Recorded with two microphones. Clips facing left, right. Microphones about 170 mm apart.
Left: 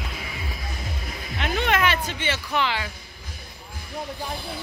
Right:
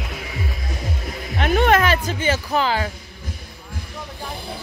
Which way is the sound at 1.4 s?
45° right (ahead or behind).